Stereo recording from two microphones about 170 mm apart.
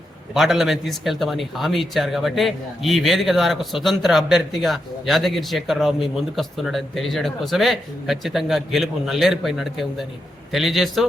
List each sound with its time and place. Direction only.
0.3 s a man's voice: centre (ahead or behind)